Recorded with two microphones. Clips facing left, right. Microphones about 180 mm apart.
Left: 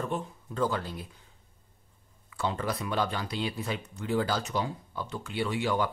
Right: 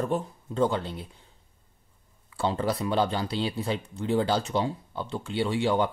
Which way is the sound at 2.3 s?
30° right (ahead or behind).